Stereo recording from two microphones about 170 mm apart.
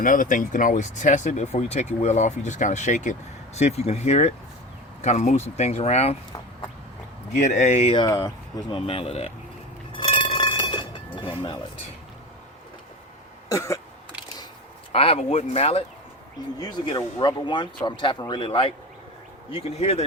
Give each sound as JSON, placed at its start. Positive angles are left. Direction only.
{"t": 0.0, "sound": "speech", "side_deg": 50}
{"t": 7.5, "sound": "speech", "side_deg": 40}
{"t": 8.0, "sound": "speech", "side_deg": 20}
{"t": 8.9, "sound": "speech", "side_deg": 35}
{"t": 9.9, "sound": "chink", "side_deg": 30}
{"t": 13.5, "sound": "cough", "side_deg": 15}
{"t": 14.9, "sound": "speech", "side_deg": 35}
{"t": 16.6, "sound": "speech", "side_deg": 25}